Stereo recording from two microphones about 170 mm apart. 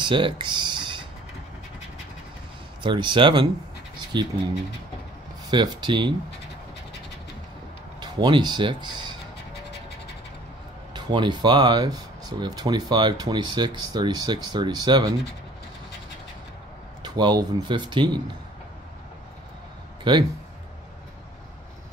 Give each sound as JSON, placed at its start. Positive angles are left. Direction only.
{"t": 0.0, "sound": "typing", "side_deg": -30}
{"t": 2.8, "sound": "speech", "side_deg": -30}
{"t": 5.5, "sound": "speech", "side_deg": -25}
{"t": 8.0, "sound": "speech", "side_deg": -25}
{"t": 10.9, "sound": "speech", "side_deg": -25}
{"t": 17.0, "sound": "speech", "side_deg": -25}
{"t": 20.0, "sound": "speech", "side_deg": -25}